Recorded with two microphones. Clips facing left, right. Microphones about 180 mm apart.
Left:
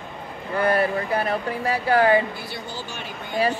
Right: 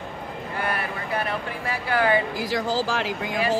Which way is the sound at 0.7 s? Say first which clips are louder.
Left 9 dB; 40° left (ahead or behind).